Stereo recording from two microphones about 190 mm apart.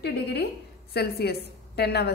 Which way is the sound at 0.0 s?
60° left (ahead or behind).